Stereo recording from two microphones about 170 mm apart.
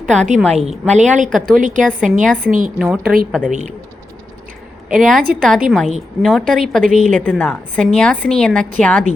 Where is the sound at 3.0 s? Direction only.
60° right (ahead or behind).